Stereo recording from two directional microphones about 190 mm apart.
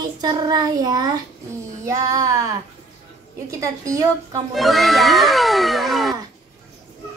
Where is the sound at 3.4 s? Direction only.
15° right (ahead or behind).